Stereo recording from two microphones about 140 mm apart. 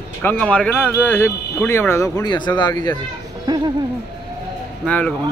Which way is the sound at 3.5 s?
30° right (ahead or behind).